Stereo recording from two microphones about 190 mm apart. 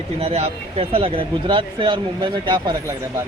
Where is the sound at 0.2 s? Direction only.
35° right (ahead or behind).